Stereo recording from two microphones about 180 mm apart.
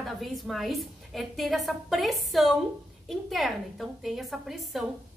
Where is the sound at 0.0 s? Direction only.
Centre (ahead or behind).